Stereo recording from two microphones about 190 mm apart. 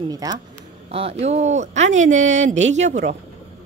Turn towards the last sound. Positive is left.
turn(degrees=-40)  # may be behind; listen again after turning